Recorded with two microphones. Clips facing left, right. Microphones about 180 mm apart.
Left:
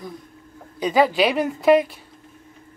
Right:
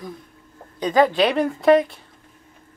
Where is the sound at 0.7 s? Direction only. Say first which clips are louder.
Right 1 dB; 10° left (ahead or behind).